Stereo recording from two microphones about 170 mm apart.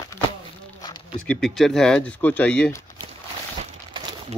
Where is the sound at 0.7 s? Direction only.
25° left (ahead or behind).